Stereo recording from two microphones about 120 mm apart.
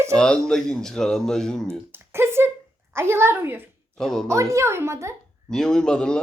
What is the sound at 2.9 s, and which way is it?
Speech, 20° right (ahead or behind).